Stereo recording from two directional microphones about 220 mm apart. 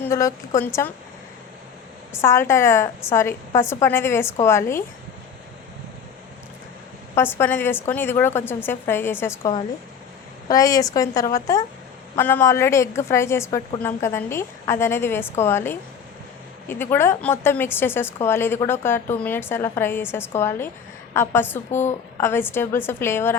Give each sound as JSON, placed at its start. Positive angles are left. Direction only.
{"t": 0.0, "sound": "a woman's voice", "side_deg": 15}
{"t": 2.2, "sound": "a woman's voice", "side_deg": 10}
{"t": 7.2, "sound": "a woman's voice", "side_deg": 10}
{"t": 10.5, "sound": "a woman's voice", "side_deg": 15}